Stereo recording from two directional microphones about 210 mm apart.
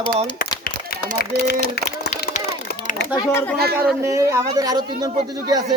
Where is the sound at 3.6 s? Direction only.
50° right (ahead or behind).